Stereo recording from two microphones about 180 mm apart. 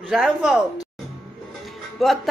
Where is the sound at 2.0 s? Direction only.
Centre (ahead or behind).